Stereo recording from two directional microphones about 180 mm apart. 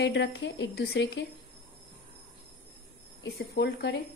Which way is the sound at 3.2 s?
65° left (ahead or behind).